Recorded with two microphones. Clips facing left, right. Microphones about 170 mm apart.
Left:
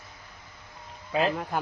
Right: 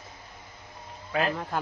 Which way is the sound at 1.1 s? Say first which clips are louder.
Left 2 dB; 20° left (ahead or behind).